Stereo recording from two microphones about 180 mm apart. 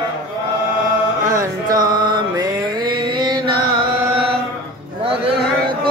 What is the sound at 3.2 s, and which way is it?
Chant, 25° right (ahead or behind).